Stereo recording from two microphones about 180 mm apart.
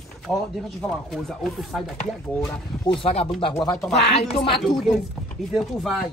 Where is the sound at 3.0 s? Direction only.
35° left (ahead or behind).